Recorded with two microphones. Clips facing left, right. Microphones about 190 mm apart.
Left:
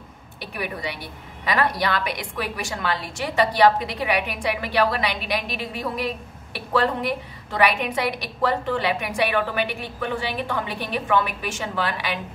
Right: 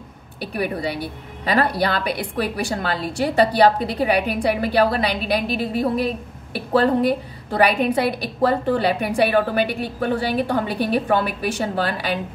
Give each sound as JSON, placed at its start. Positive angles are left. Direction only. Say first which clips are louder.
{"t": 0.5, "sound": "a woman's voice", "louder": "right 6 dB", "side_deg": -35}